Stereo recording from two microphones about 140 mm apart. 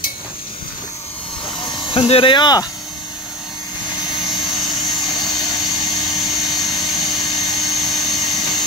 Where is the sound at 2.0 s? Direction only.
40° left (ahead or behind).